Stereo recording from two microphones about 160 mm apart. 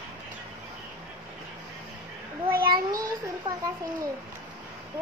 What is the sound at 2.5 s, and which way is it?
Child singing, 70° right (ahead or behind).